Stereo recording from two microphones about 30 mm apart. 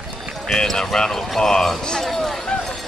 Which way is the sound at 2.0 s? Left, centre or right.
Centre.